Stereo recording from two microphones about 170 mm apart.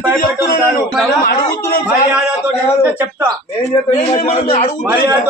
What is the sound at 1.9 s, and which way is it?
Speech, 5° right (ahead or behind).